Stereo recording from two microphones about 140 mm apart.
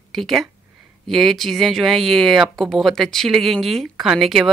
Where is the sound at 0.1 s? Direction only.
Centre (ahead or behind).